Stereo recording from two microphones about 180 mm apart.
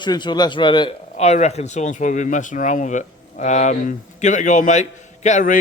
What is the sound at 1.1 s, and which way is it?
Speech, 35° left (ahead or behind).